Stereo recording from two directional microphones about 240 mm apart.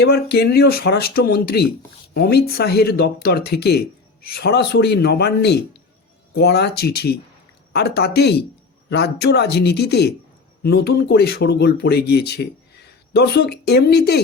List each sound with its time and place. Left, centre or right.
0.0 s speech: left